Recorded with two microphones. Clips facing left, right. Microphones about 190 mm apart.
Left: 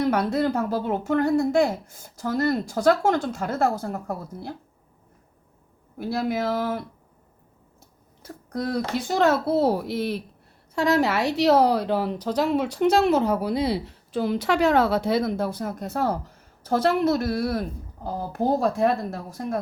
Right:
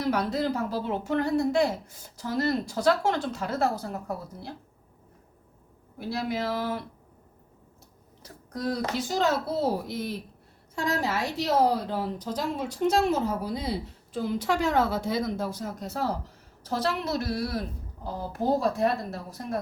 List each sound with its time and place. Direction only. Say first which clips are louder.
0.1 s a woman's voice: left 4 dB; 55° left (ahead or behind)
6.0 s a woman's voice: left 4 dB; 50° left (ahead or behind)
8.2 s a woman's voice: left 3 dB; 60° left (ahead or behind)